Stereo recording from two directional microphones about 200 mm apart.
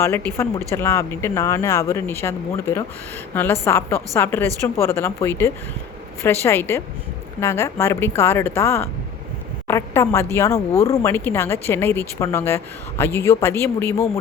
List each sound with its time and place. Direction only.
0.0 s speech: 15° left (ahead or behind)